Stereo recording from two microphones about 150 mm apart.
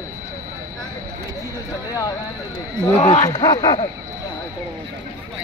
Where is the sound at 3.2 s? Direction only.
25° left (ahead or behind).